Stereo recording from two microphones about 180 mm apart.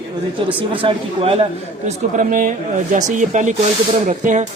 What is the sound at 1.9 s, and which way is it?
Speech, 45° right (ahead or behind).